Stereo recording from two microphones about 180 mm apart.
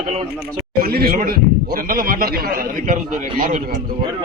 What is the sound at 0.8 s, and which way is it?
A man's voice, 55° right (ahead or behind).